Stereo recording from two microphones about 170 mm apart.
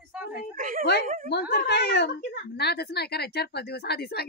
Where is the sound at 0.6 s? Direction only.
55° right (ahead or behind).